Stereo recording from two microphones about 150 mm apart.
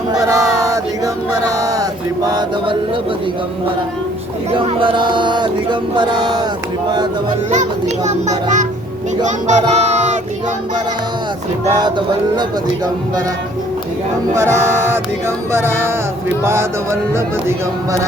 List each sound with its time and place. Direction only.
0.2 s male singing: 20° right (ahead or behind)
4.5 s chant: 35° right (ahead or behind)
7.5 s a child's voice: 50° right (ahead or behind)
11.8 s speech: 30° right (ahead or behind)
14.3 s speech: 15° right (ahead or behind)